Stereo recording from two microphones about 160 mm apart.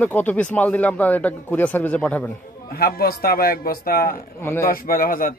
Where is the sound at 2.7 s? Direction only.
70° left (ahead or behind).